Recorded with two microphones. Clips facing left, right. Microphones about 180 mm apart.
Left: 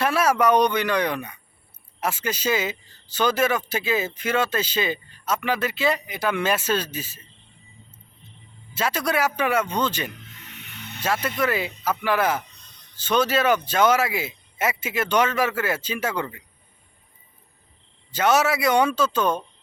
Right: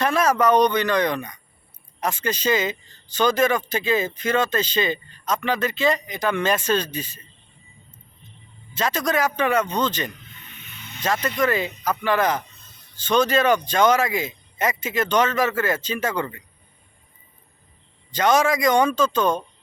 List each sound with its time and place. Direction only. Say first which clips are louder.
0.0 s speech: right 1 dB; 10° left (ahead or behind)
8.7 s speech: right 1 dB; 10° left (ahead or behind)
10.3 s a sound: left 2 dB; 75° left (ahead or behind)
11.0 s speech: right 2 dB; 10° left (ahead or behind)
18.1 s speech: right 1 dB; 5° left (ahead or behind)